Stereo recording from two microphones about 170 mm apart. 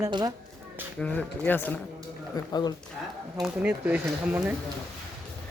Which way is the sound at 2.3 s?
25° left (ahead or behind).